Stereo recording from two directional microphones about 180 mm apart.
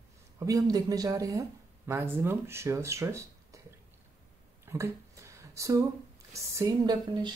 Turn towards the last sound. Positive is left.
turn(degrees=-20)  # may be behind; listen again after turning